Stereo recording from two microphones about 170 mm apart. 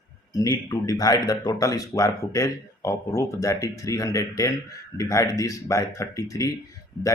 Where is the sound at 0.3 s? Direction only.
20° left (ahead or behind).